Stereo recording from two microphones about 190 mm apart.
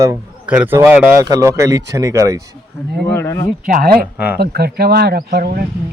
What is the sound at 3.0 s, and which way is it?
Speech, 15° left (ahead or behind).